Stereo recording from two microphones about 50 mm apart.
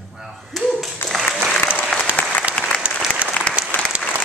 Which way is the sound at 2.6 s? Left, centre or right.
Left.